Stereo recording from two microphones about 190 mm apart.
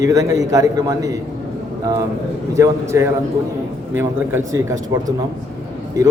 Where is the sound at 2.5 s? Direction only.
15° right (ahead or behind).